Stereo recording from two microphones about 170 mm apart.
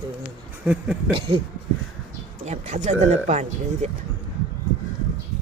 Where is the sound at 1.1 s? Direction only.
30° right (ahead or behind).